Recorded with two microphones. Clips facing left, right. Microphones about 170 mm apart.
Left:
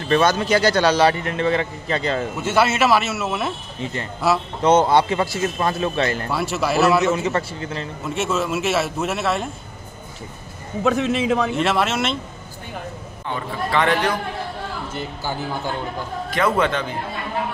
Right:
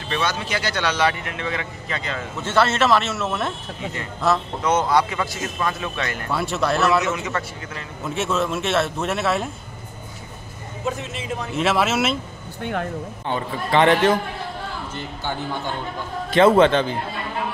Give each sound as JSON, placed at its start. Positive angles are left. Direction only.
{"t": 0.1, "sound": "a man's voice", "side_deg": 45}
{"t": 2.4, "sound": "a man's voice", "side_deg": 10}
{"t": 4.6, "sound": "a man's voice", "side_deg": 30}
{"t": 6.3, "sound": "a man's voice", "side_deg": 5}
{"t": 7.0, "sound": "a man's voice", "side_deg": 30}
{"t": 8.0, "sound": "a man's voice", "side_deg": 0}
{"t": 10.8, "sound": "a man's voice", "side_deg": 85}
{"t": 11.5, "sound": "a man's voice", "side_deg": 0}
{"t": 13.3, "sound": "a man's voice", "side_deg": -25}
{"t": 15.0, "sound": "a man's voice", "side_deg": 5}
{"t": 16.3, "sound": "a man's voice", "side_deg": -25}